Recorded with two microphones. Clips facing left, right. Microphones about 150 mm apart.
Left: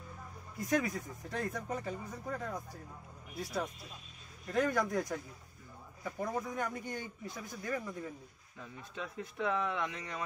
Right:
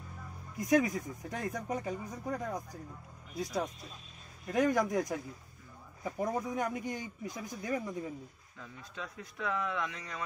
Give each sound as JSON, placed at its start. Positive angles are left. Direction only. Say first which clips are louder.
{"t": 0.6, "sound": "speech", "louder": "right 5 dB", "side_deg": -10}
{"t": 4.5, "sound": "speech", "louder": "right 3 dB", "side_deg": -15}
{"t": 8.9, "sound": "speech", "louder": "left 3 dB", "side_deg": 25}